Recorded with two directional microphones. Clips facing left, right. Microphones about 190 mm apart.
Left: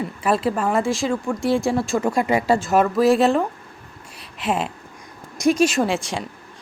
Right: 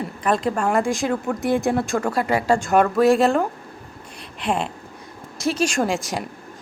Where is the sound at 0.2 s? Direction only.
5° left (ahead or behind).